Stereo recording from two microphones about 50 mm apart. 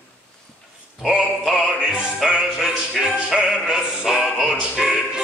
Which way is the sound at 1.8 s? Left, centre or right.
Centre.